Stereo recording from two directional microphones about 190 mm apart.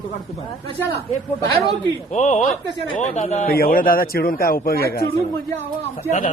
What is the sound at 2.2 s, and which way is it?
A man's voice, 40° left (ahead or behind).